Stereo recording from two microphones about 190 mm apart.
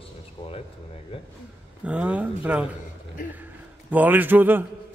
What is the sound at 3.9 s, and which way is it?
Speech, 10° right (ahead or behind).